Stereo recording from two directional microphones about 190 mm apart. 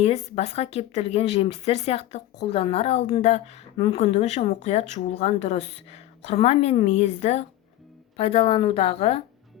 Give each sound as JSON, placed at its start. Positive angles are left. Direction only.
{"t": 0.0, "sound": "speech", "side_deg": 35}